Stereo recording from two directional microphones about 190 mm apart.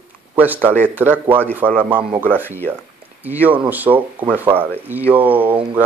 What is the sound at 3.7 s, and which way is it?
Speech, 10° right (ahead or behind).